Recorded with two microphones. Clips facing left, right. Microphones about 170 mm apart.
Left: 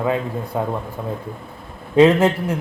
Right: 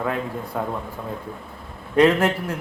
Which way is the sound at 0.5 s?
20° left (ahead or behind).